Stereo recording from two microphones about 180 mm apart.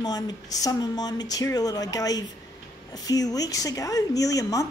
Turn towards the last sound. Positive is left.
turn(degrees=20)  # may be behind; listen again after turning